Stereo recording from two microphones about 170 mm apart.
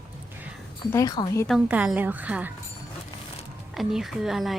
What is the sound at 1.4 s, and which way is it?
A woman's voice, 5° right (ahead or behind).